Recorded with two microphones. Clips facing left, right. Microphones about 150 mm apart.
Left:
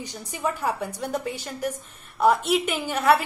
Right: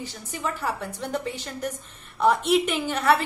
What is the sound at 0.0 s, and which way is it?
A woman's voice, 15° left (ahead or behind).